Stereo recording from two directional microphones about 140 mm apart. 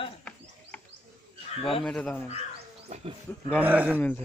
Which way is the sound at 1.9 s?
5° left (ahead or behind).